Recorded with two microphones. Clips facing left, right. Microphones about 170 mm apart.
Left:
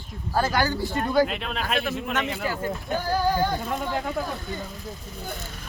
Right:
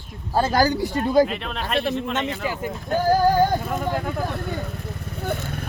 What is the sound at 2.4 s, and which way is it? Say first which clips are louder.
Speech: right 1 dB; 15° right (ahead or behind).